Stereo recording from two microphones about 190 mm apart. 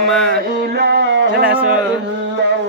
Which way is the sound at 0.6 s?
60° right (ahead or behind).